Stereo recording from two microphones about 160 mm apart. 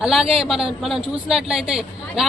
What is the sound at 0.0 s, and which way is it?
A man's voice, 5° right (ahead or behind).